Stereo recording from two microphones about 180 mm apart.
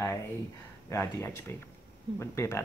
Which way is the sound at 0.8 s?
15° left (ahead or behind).